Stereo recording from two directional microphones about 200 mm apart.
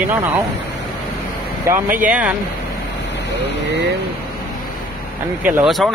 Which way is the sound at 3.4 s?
60° right (ahead or behind).